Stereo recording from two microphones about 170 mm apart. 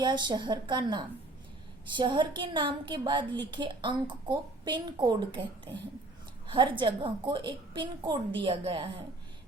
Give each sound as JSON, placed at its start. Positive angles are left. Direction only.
{"t": 0.0, "sound": "a woman's voice", "side_deg": -25}
{"t": 6.5, "sound": "a woman's voice", "side_deg": -30}